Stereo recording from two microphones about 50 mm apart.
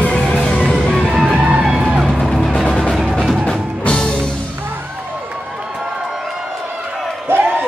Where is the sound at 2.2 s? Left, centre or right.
Centre.